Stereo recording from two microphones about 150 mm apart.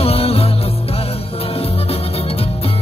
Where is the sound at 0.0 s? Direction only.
40° left (ahead or behind).